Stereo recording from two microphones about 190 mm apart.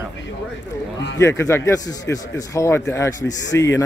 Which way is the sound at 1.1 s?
15° left (ahead or behind).